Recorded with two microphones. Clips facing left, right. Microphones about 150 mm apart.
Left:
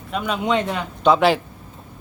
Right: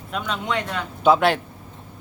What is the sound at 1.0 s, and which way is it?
Speech, centre (ahead or behind).